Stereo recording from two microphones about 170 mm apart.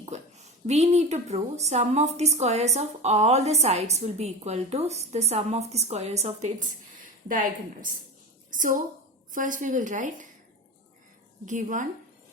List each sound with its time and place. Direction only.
0.0 s a woman's voice: 40° right (ahead or behind)
7.3 s speech: 55° right (ahead or behind)
11.4 s speech: 50° right (ahead or behind)